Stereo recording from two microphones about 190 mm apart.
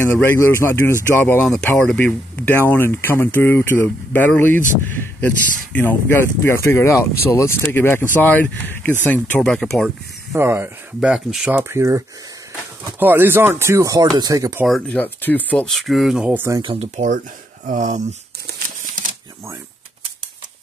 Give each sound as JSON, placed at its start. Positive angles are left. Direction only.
{"t": 0.0, "sound": "speech", "side_deg": 10}
{"t": 9.8, "sound": "speech", "side_deg": -10}
{"t": 13.0, "sound": "speech", "side_deg": -10}
{"t": 14.7, "sound": "speech", "side_deg": 10}
{"t": 16.6, "sound": "speech", "side_deg": -30}